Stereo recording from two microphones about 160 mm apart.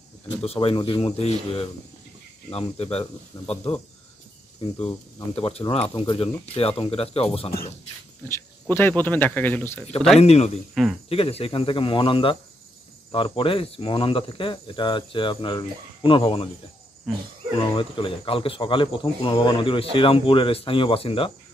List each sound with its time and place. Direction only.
0.4 s speech: 40° left (ahead or behind)
5.3 s speech: 35° left (ahead or behind)
8.3 s speech: 15° left (ahead or behind)
10.1 s speech: 40° left (ahead or behind)
10.7 s speech: centre (ahead or behind)
11.1 s speech: 40° left (ahead or behind)
17.6 s speech: 35° left (ahead or behind)